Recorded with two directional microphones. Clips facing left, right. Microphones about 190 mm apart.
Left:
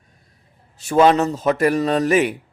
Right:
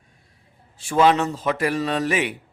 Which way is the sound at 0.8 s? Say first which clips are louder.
Left 3 dB; 40° left (ahead or behind).